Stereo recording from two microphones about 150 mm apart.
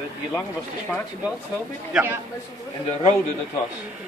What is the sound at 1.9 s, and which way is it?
Speech, 10° right (ahead or behind).